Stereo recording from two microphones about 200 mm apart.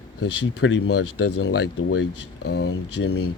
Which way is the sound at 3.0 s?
90° left.